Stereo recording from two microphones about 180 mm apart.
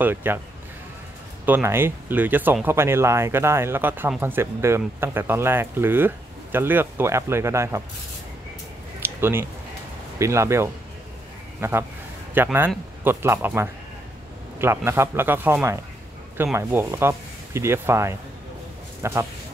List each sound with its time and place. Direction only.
0.0 s speech: 10° right (ahead or behind)
1.4 s speech: 10° right (ahead or behind)
9.0 s a sound: 15° right (ahead or behind)
10.1 s speech: 15° right (ahead or behind)